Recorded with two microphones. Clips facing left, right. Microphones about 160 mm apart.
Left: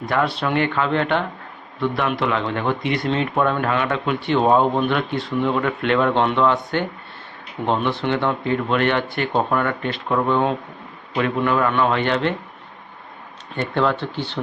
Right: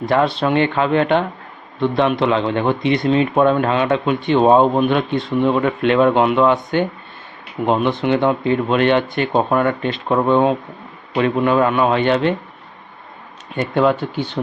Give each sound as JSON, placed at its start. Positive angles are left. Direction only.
{"t": 0.0, "sound": "speech", "side_deg": -25}
{"t": 13.6, "sound": "speech", "side_deg": -15}